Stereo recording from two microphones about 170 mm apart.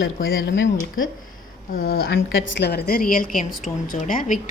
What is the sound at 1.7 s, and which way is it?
A woman's voice, 65° left (ahead or behind).